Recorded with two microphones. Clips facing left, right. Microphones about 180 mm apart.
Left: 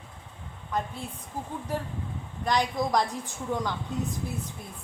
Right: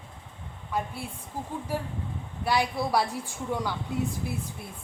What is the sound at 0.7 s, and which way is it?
A man's voice, 10° right (ahead or behind).